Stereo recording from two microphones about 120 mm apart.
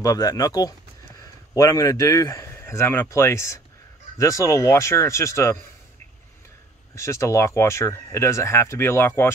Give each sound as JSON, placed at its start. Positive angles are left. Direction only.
{"t": 0.0, "sound": "a man's voice", "side_deg": 30}
{"t": 7.0, "sound": "speech", "side_deg": 25}